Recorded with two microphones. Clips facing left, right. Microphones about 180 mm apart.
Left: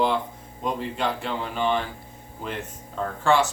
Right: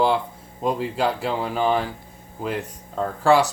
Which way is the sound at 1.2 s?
40° right (ahead or behind).